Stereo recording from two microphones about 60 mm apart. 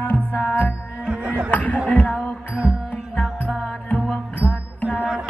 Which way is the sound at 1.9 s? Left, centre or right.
Left.